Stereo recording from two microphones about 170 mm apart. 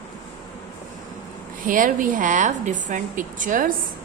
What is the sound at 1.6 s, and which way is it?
A woman's voice, 50° right (ahead or behind).